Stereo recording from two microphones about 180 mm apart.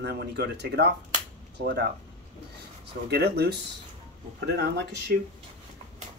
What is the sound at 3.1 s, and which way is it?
Speech, 65° right (ahead or behind).